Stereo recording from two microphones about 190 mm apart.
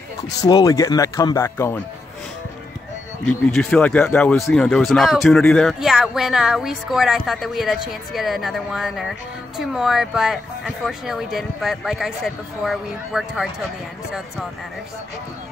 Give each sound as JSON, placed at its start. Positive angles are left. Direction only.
{"t": 0.4, "sound": "speech", "side_deg": 20}
{"t": 3.3, "sound": "speech", "side_deg": 5}